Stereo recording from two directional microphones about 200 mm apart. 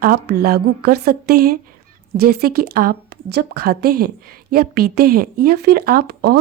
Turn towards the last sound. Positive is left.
turn(degrees=-50)  # may be behind; listen again after turning